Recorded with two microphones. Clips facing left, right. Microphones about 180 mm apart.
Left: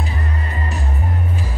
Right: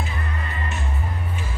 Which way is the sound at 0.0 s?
35° left (ahead or behind).